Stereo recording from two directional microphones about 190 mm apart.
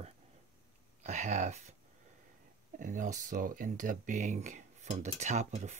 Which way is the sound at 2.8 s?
45° right (ahead or behind).